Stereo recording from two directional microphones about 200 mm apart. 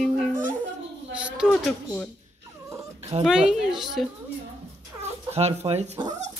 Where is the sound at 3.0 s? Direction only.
35° right (ahead or behind).